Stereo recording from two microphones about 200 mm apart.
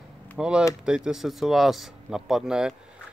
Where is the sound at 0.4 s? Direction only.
5° right (ahead or behind).